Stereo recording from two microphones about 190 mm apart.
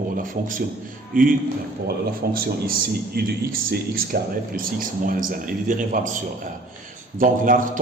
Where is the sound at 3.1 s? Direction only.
55° right (ahead or behind).